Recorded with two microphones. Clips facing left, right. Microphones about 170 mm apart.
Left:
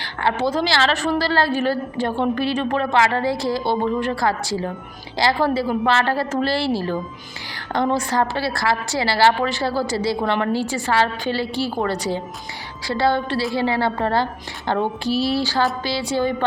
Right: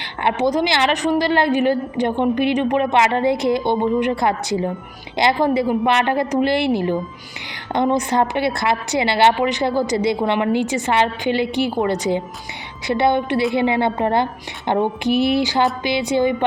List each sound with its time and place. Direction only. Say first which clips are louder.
0.3 s a woman's voice: right 2 dB; 20° right (ahead or behind)